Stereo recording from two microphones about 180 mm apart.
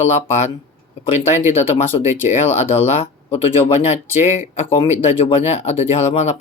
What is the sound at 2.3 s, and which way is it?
Speech, 40° left (ahead or behind).